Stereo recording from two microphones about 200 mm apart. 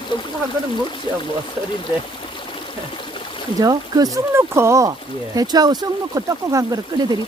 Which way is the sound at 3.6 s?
20° right (ahead or behind).